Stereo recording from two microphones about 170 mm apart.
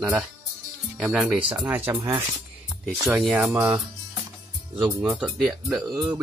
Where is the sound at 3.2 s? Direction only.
5° right (ahead or behind).